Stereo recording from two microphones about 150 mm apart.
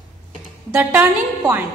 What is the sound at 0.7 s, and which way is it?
Speech, 10° right (ahead or behind).